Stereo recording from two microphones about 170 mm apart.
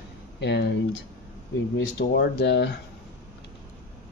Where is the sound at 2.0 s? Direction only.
70° left (ahead or behind).